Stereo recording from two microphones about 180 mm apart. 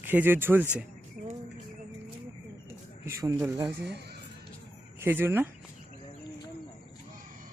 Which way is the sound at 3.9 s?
65° right (ahead or behind).